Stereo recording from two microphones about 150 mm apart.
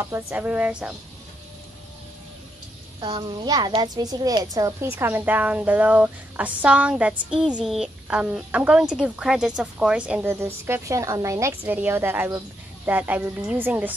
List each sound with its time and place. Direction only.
0.0 s a woman's voice: 15° right (ahead or behind)
3.0 s a child's voice: 30° right (ahead or behind)
4.9 s a woman's voice: 15° right (ahead or behind)